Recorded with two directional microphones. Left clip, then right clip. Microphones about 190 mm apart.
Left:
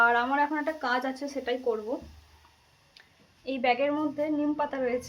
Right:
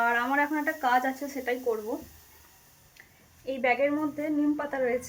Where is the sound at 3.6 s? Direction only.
Centre (ahead or behind).